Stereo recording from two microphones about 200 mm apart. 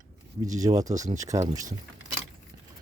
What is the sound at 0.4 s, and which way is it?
Speech, 15° right (ahead or behind).